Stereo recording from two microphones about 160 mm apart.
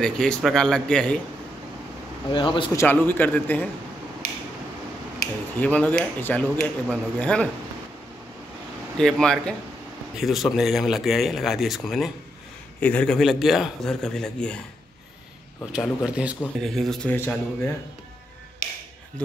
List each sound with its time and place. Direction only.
0.0 s speech: 5° left (ahead or behind)
2.3 s speech: 30° left (ahead or behind)
2.7 s speech: 15° left (ahead or behind)
4.2 s a sound: 70° left (ahead or behind)
5.6 s speech: 10° left (ahead or behind)
8.9 s speech: 5° left (ahead or behind)
15.7 s speech: 5° right (ahead or behind)
18.6 s speech: 55° left (ahead or behind)